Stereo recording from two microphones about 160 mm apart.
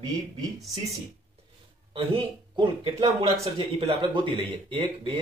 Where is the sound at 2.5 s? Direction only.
35° right (ahead or behind).